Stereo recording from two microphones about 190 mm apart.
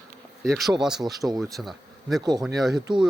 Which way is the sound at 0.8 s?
5° right (ahead or behind).